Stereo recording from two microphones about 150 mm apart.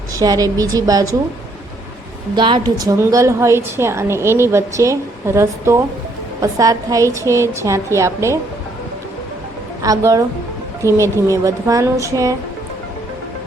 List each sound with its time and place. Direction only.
0.2 s a woman's voice: 25° right (ahead or behind)
2.3 s a woman's voice: 30° right (ahead or behind)
9.8 s a woman's voice: 20° right (ahead or behind)